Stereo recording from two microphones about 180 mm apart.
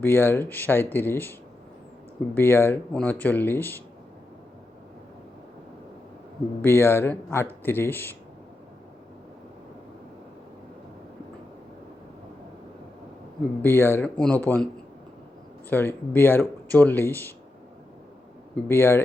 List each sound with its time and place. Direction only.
0.0 s speech: 10° left (ahead or behind)
6.6 s speech: 15° left (ahead or behind)
13.6 s speech: 10° left (ahead or behind)
15.7 s speech: 10° left (ahead or behind)
18.5 s speech: 10° left (ahead or behind)